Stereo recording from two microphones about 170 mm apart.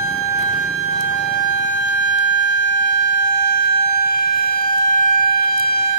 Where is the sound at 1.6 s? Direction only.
90° left.